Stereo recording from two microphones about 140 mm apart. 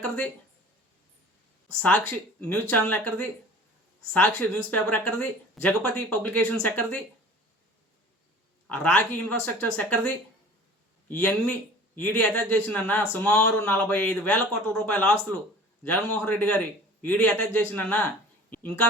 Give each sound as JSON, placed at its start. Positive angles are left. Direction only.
{"t": 2.4, "sound": "a man's voice", "side_deg": 10}
{"t": 8.7, "sound": "a man's voice", "side_deg": 10}
{"t": 11.1, "sound": "a man's voice", "side_deg": 15}
{"t": 13.2, "sound": "speech", "side_deg": 20}
{"t": 13.7, "sound": "a man's voice", "side_deg": 10}